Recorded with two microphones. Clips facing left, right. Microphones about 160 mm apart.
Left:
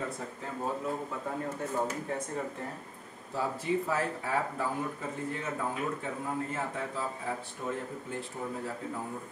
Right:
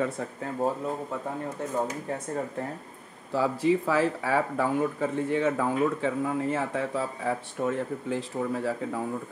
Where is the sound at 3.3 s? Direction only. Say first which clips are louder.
Right 7 dB; 90° right; by 7.7 s 75° right (ahead or behind).